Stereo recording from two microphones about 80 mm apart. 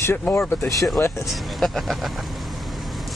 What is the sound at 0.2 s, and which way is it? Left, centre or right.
Speech, left.